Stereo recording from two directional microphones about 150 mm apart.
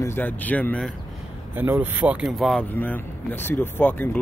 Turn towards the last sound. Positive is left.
turn(degrees=10)  # may be behind; listen again after turning